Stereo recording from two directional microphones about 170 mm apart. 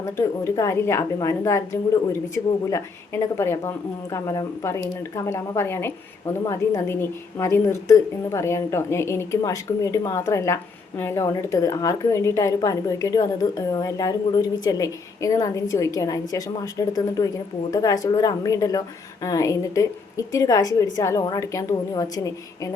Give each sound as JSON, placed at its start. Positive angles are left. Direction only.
{"t": 0.0, "sound": "a woman's voice", "side_deg": 15}